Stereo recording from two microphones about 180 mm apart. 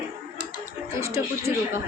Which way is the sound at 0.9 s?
15° right (ahead or behind).